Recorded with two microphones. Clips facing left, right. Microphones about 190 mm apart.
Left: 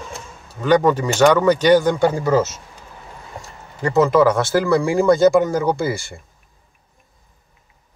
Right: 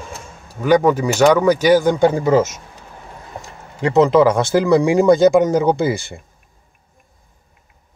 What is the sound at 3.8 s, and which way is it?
Speech, 20° right (ahead or behind).